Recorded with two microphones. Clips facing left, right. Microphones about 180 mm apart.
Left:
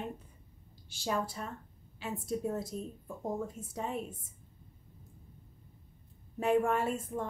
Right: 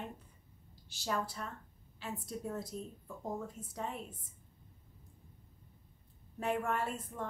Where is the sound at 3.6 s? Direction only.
90° left.